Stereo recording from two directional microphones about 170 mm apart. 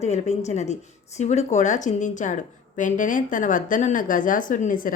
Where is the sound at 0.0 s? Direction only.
40° left (ahead or behind).